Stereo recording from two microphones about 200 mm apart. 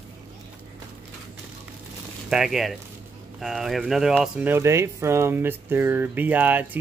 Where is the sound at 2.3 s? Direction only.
Centre (ahead or behind).